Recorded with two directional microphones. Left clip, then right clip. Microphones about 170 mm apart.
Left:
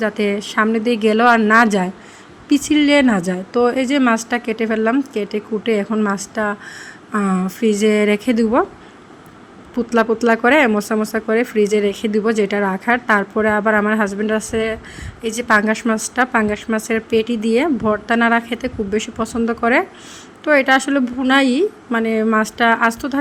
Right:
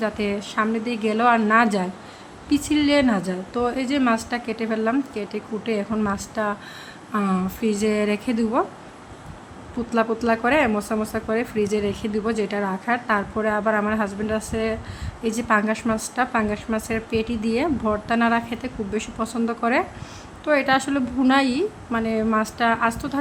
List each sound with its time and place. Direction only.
0.0 s speech: 30° left (ahead or behind)
9.9 s speech: 35° left (ahead or behind)